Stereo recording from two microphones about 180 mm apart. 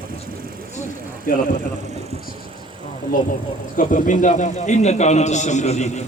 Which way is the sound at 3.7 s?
45° left (ahead or behind).